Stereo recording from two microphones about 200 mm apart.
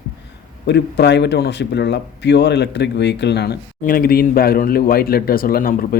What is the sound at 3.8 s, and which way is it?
Speech, 45° left (ahead or behind).